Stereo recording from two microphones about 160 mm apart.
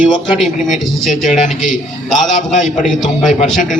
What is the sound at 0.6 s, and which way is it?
Speech, centre (ahead or behind).